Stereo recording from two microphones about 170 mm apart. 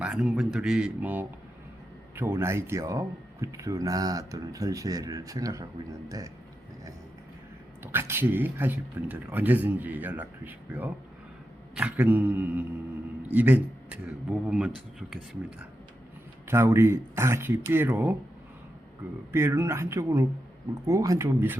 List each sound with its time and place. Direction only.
0.0 s speech: 5° right (ahead or behind)
7.9 s speech: 15° right (ahead or behind)
16.5 s speech: 15° right (ahead or behind)
19.3 s speech: 15° right (ahead or behind)